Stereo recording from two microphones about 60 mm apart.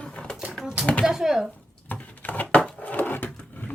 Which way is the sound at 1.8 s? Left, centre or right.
Left.